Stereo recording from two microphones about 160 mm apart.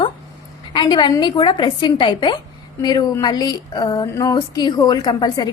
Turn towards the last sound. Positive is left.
turn(degrees=25)  # may be behind; listen again after turning